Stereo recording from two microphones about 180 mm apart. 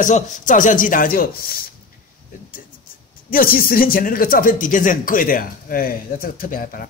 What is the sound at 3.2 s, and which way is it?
Speech, 55° left (ahead or behind).